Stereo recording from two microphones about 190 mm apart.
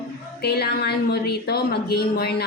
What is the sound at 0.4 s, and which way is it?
A woman's voice, 55° left (ahead or behind).